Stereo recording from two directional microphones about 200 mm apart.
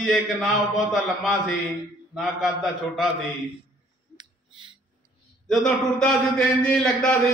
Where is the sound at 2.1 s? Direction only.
Centre (ahead or behind).